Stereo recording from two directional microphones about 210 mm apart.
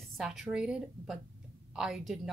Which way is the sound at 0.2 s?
5° right (ahead or behind).